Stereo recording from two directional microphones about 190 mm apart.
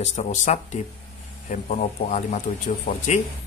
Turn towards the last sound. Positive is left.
turn(degrees=40)  # may be behind; listen again after turning